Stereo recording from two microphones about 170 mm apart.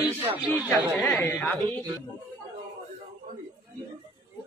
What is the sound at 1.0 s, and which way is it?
Speech, 10° left (ahead or behind).